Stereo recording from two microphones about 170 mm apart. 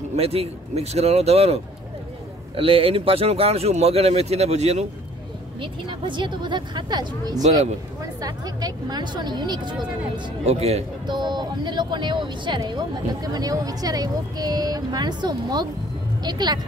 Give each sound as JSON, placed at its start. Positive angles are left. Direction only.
{"t": 0.1, "sound": "speech", "side_deg": -35}
{"t": 5.6, "sound": "speech", "side_deg": -30}
{"t": 10.4, "sound": "speech", "side_deg": -40}
{"t": 11.1, "sound": "speech", "side_deg": -25}